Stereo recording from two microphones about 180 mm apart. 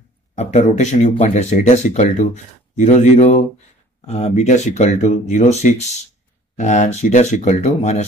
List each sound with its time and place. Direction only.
0.4 s speech: 40° left (ahead or behind)